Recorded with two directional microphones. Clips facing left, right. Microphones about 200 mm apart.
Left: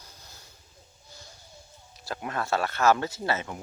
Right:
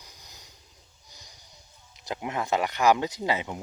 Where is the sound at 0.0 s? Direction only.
15° right (ahead or behind).